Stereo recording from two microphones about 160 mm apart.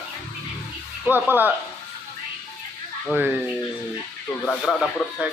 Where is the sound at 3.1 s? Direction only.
10° right (ahead or behind).